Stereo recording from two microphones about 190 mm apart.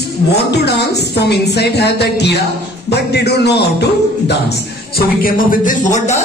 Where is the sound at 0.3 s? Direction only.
60° left (ahead or behind).